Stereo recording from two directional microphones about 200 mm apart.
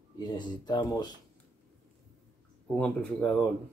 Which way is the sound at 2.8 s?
5° left (ahead or behind).